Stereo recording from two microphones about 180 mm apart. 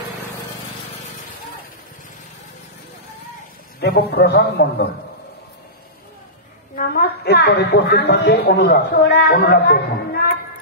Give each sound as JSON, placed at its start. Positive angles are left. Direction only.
{"t": 3.8, "sound": "a man's voice", "side_deg": 65}
{"t": 6.7, "sound": "a woman's voice", "side_deg": 55}